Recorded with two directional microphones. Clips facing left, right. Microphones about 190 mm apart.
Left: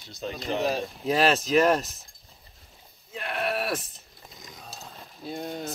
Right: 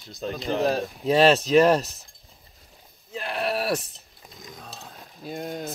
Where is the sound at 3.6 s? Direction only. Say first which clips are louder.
Right 4 dB; centre (ahead or behind).